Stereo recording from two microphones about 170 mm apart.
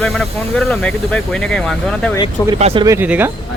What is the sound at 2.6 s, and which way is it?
Speech, 35° right (ahead or behind).